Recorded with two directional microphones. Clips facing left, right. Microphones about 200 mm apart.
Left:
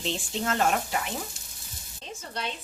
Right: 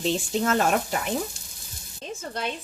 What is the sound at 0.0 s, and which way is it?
Speech, 45° right (ahead or behind).